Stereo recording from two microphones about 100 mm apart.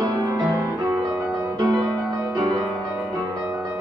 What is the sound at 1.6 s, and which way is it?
Music, 50° right (ahead or behind).